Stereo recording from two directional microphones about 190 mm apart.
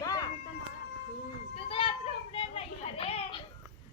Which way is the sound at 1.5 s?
30° left (ahead or behind).